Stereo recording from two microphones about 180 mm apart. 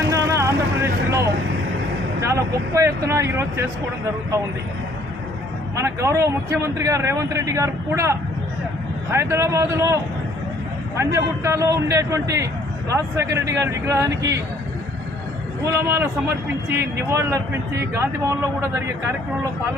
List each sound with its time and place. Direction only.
0.1 s vehicle: 15° right (ahead or behind)
2.7 s speech: 15° right (ahead or behind)
5.8 s speech: 15° right (ahead or behind)
9.1 s speech: 15° right (ahead or behind)
15.6 s speech: 15° right (ahead or behind)